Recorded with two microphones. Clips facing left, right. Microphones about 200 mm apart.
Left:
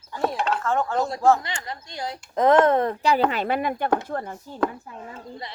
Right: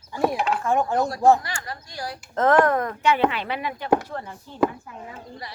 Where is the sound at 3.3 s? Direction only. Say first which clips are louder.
Left 4 dB; 45° left (ahead or behind).